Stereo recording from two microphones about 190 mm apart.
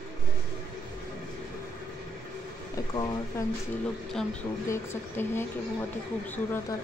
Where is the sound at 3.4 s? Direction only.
15° left (ahead or behind).